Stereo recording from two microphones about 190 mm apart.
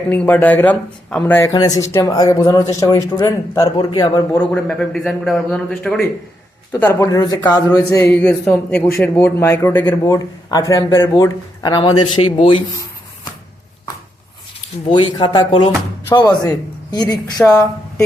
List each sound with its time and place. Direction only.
0.1 s speech: 10° left (ahead or behind)
4.5 s a man's voice: 5° left (ahead or behind); by 12.6 s 25° left (ahead or behind)
15.2 s speech: 25° left (ahead or behind)